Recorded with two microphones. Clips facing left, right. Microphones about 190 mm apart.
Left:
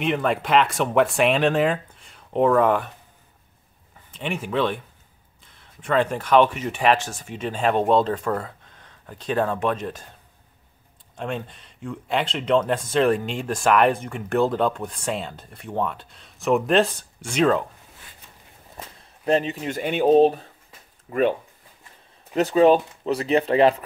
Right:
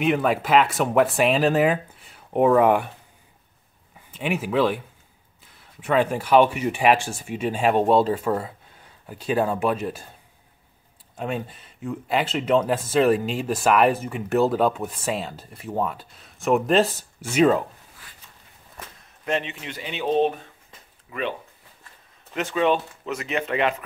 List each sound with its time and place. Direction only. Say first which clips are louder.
0.0 s speech: right 2 dB; 5° right (ahead or behind)
4.1 s speech: right 2 dB; 5° right (ahead or behind)
11.1 s speech: right 1 dB; 5° right (ahead or behind)
18.8 s speech: left 2 dB; 35° left (ahead or behind)
21.1 s speech: left 8 dB; 45° left (ahead or behind)